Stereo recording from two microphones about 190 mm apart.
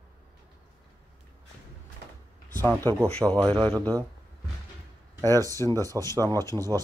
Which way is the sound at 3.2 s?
10° right (ahead or behind).